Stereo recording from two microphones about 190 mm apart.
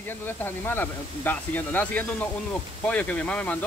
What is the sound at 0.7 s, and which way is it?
Speech, 10° left (ahead or behind).